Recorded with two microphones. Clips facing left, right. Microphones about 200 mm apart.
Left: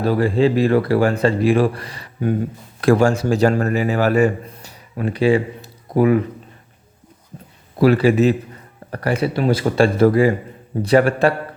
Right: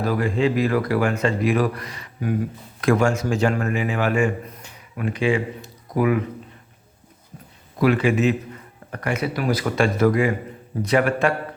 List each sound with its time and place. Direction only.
0.0 s speech: 30° left (ahead or behind)
7.8 s speech: 35° left (ahead or behind)